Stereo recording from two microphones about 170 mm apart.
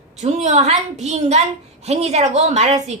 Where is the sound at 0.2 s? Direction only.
40° right (ahead or behind).